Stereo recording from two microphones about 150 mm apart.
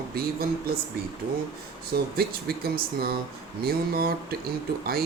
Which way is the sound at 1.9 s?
90° right.